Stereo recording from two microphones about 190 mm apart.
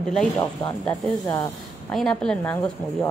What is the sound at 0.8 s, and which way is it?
Speech, centre (ahead or behind).